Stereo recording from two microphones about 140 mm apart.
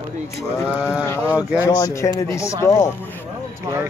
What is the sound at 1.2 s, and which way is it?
Speech, 10° right (ahead or behind).